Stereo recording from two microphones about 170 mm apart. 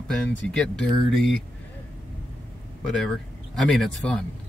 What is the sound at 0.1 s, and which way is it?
Speech, 5° left (ahead or behind).